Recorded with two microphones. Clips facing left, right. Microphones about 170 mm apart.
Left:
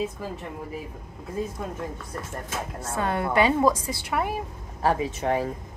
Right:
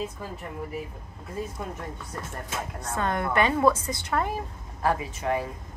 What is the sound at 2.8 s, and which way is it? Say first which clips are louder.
Speech: left 1 dB; 10° left (ahead or behind).